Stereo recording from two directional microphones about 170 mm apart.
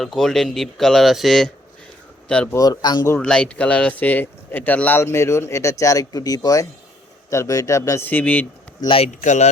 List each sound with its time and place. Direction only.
0.0 s speech: centre (ahead or behind)
2.6 s a man's voice: 25° left (ahead or behind)
3.2 s speech: 5° left (ahead or behind)
8.8 s speech: 30° left (ahead or behind)
9.2 s speech: 45° left (ahead or behind)